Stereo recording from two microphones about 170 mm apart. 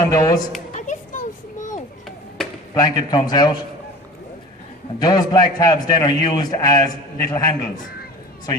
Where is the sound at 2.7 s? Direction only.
25° left (ahead or behind).